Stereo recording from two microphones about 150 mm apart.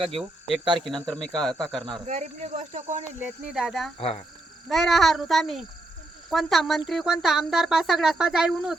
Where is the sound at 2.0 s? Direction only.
50° right (ahead or behind).